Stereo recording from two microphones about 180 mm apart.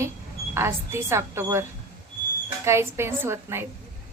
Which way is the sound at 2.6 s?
15° right (ahead or behind).